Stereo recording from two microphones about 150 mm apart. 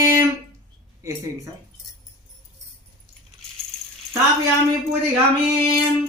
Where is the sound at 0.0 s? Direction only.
20° right (ahead or behind).